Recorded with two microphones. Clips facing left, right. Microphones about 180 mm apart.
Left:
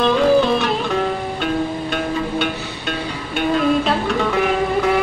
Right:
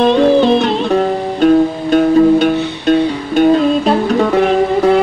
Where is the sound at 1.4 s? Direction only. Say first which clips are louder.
Right 14 dB; 40° right (ahead or behind).